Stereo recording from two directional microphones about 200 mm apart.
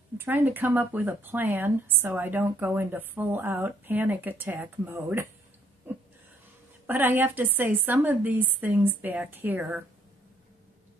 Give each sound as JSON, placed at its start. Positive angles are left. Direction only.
{"t": 0.2, "sound": "speech", "side_deg": -10}
{"t": 5.9, "sound": "a sound", "side_deg": -10}
{"t": 6.9, "sound": "speech", "side_deg": -10}